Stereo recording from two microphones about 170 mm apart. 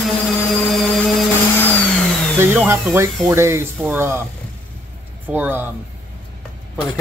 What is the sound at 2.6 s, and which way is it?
Speech, 15° right (ahead or behind).